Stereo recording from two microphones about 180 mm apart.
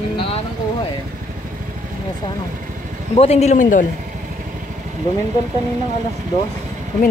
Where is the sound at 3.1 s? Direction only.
35° left (ahead or behind).